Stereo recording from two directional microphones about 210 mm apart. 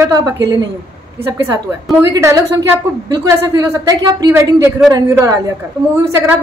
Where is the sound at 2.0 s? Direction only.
15° right (ahead or behind).